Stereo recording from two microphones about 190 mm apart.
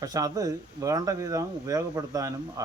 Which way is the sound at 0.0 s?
20° right (ahead or behind).